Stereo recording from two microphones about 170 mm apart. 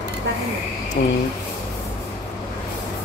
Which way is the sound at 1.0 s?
50° left (ahead or behind).